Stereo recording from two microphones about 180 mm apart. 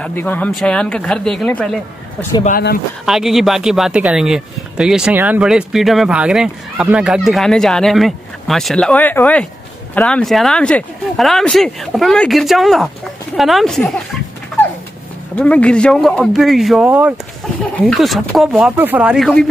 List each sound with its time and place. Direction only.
0.0 s speech: 10° left (ahead or behind)
3.1 s speech: centre (ahead or behind)
15.3 s speech: 5° left (ahead or behind)